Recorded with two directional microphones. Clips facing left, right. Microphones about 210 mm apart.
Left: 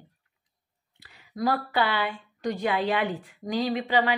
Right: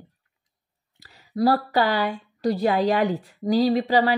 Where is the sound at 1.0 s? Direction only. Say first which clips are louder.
Right 7 dB; 40° right (ahead or behind).